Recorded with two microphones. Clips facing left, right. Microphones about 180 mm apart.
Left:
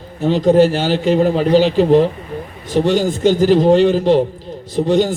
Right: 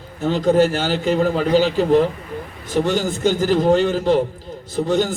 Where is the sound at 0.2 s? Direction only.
15° left (ahead or behind).